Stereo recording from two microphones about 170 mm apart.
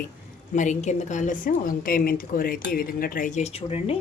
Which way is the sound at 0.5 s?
45° left (ahead or behind).